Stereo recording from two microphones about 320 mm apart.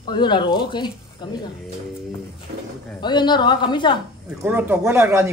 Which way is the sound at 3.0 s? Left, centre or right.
Centre.